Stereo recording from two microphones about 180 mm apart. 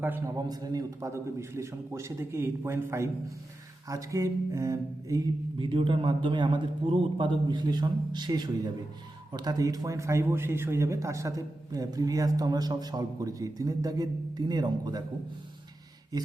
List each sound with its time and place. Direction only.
0.0 s a man's voice: 15° right (ahead or behind)